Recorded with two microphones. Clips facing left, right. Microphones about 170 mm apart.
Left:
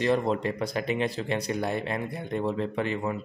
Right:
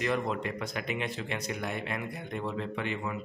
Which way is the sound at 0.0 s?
35° left (ahead or behind).